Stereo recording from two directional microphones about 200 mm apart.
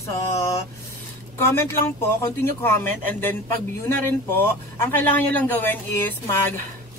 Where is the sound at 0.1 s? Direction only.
15° left (ahead or behind).